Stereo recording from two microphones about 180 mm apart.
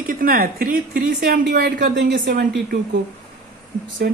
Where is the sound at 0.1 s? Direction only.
50° right (ahead or behind).